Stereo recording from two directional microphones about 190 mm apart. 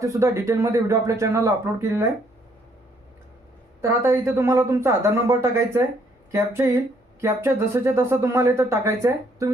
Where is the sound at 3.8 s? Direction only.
15° right (ahead or behind).